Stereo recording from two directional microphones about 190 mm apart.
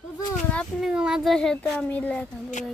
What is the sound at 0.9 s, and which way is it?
A child's voice, 5° right (ahead or behind).